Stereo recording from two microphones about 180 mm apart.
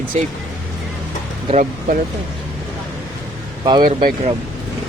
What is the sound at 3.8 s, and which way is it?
Speech, 50° right (ahead or behind).